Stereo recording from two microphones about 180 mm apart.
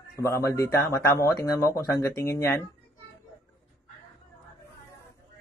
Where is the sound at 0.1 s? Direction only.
15° left (ahead or behind).